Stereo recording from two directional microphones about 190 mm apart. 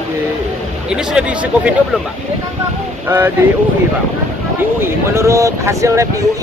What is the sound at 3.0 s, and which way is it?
Speech, 10° right (ahead or behind).